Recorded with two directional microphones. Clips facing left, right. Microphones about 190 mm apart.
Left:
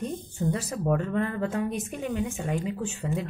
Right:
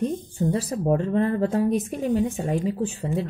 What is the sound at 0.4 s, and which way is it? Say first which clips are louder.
A woman's voice: right 4 dB; 30° right (ahead or behind).